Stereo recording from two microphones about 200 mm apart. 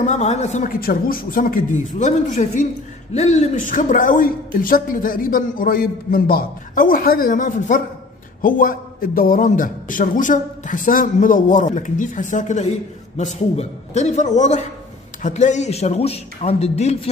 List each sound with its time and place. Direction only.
0.0 s a man's voice: 35° left (ahead or behind)